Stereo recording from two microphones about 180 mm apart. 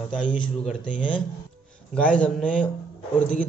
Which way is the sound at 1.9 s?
5° left (ahead or behind).